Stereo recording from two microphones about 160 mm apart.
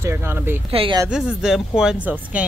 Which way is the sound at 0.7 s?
35° right (ahead or behind).